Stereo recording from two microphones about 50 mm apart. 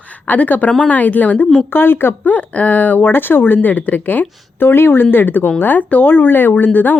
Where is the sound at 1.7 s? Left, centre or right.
Left.